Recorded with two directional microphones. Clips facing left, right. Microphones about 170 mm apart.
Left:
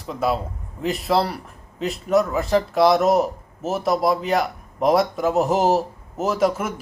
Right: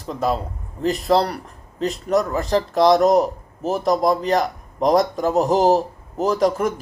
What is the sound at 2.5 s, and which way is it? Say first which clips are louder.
A man's voice: right 2 dB; 5° left (ahead or behind).